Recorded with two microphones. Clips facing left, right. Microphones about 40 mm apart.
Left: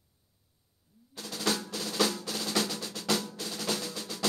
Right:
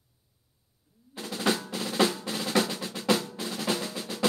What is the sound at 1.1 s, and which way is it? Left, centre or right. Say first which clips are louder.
Drum: right 4 dB; right.